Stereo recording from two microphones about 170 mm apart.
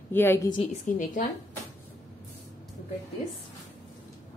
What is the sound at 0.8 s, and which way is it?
Speech, 50° left (ahead or behind).